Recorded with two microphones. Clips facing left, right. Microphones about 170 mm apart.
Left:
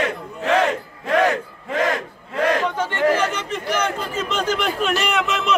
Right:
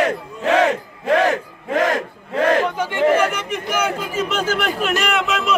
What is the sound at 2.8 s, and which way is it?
Chatter, 10° right (ahead or behind).